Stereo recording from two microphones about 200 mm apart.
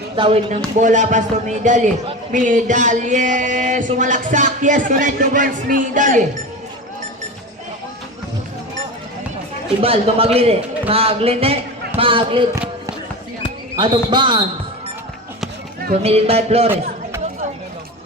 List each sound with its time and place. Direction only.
0.2 s speech: 30° right (ahead or behind)
9.8 s a man's voice: 30° right (ahead or behind)
13.7 s a man's voice: 25° right (ahead or behind)
16.0 s speech: 30° right (ahead or behind)
16.6 s a sound: 10° right (ahead or behind)